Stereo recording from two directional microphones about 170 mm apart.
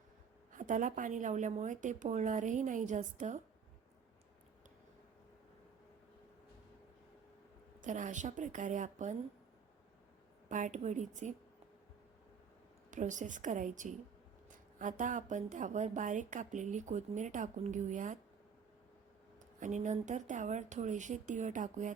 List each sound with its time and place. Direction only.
0.5 s a woman's voice: 50° right (ahead or behind)
7.8 s a woman's voice: 50° right (ahead or behind)
10.5 s a woman's voice: 45° right (ahead or behind)
12.9 s a woman's voice: 45° right (ahead or behind)
19.5 s a woman's voice: 45° right (ahead or behind)